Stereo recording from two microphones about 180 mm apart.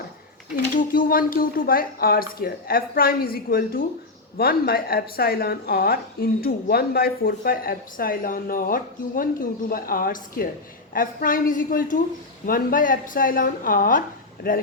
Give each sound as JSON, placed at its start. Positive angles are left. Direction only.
{"t": 0.5, "sound": "a woman's voice", "side_deg": 50}